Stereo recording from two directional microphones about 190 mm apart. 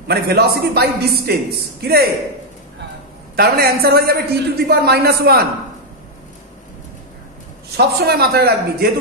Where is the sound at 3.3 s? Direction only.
55° right (ahead or behind).